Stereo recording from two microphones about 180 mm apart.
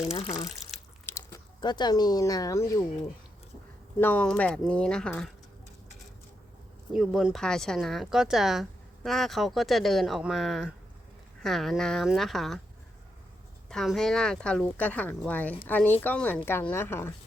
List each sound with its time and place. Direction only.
0.1 s speech: 30° left (ahead or behind)
1.0 s speech: 15° left (ahead or behind)
4.0 s speech: 5° left (ahead or behind)
6.9 s speech: centre (ahead or behind)
13.7 s speech: centre (ahead or behind)